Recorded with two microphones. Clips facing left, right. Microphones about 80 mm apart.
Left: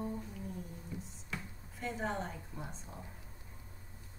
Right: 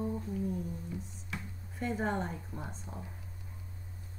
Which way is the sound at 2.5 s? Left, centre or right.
Right.